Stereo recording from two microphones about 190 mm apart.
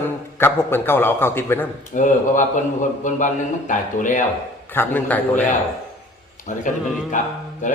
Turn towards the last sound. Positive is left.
turn(degrees=40)  # may be behind; listen again after turning